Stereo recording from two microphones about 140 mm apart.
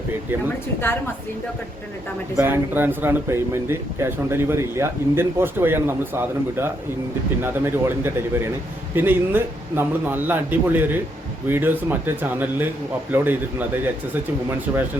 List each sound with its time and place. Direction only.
0.9 s a woman's voice: 15° left (ahead or behind)
2.3 s speech: 15° right (ahead or behind)